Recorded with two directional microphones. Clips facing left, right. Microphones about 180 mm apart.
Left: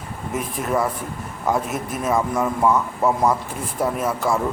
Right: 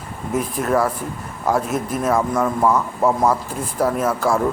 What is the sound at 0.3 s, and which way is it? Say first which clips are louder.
A man's voice: right 4 dB; centre (ahead or behind).